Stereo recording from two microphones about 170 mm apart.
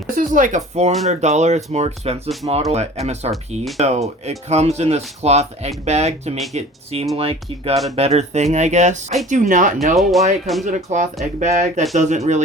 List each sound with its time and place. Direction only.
0.2 s speech: 50° right (ahead or behind)
9.9 s speech: centre (ahead or behind)
10.7 s speech: 45° right (ahead or behind)